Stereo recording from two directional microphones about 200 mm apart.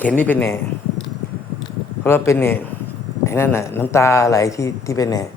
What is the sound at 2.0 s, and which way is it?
Speech, 10° left (ahead or behind).